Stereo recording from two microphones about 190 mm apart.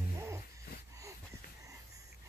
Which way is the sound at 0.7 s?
55° left (ahead or behind).